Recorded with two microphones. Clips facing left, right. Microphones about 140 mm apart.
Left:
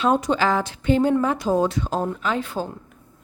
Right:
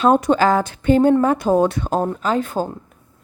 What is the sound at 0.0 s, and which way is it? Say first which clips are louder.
A woman's voice: right 5 dB; 50° right (ahead or behind).